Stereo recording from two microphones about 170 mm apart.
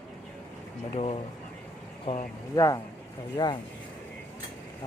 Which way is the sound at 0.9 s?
35° left (ahead or behind).